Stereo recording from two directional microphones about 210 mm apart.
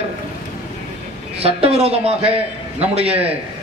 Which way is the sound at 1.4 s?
30° right (ahead or behind).